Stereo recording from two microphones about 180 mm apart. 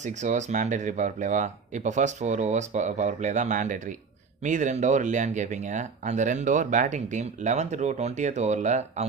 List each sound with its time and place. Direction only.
0.0 s speech: 40° right (ahead or behind)